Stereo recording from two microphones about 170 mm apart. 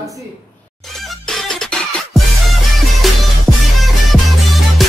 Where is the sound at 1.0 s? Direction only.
Centre (ahead or behind).